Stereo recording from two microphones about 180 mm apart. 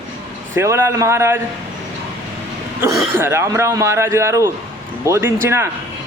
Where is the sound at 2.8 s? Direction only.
15° right (ahead or behind).